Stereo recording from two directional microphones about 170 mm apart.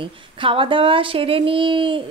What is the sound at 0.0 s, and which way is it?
Speech, 30° right (ahead or behind).